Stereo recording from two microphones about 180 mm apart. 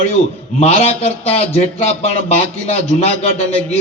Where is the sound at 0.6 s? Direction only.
35° left (ahead or behind).